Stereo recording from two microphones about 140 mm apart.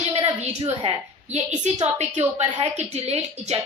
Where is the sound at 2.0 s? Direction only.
50° right (ahead or behind).